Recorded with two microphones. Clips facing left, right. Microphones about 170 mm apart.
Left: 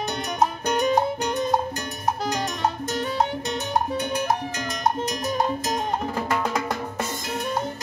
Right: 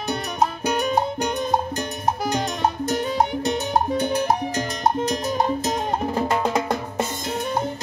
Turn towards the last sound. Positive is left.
turn(degrees=-20)  # may be behind; listen again after turning